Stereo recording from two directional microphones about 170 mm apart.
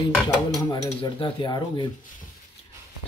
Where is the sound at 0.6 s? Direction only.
25° left (ahead or behind).